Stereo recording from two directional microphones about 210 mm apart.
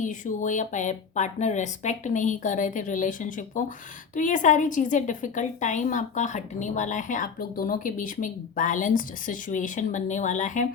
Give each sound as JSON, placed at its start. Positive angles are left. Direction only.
{"t": 0.0, "sound": "a woman's voice", "side_deg": 35}